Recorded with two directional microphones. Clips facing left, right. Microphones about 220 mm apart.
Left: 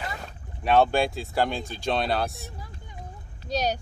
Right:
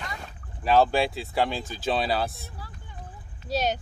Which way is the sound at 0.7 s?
Centre (ahead or behind).